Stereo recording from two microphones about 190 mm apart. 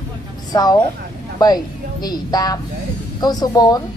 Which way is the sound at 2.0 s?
20° left (ahead or behind).